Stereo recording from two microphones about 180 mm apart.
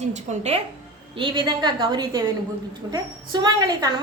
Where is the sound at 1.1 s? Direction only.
30° right (ahead or behind).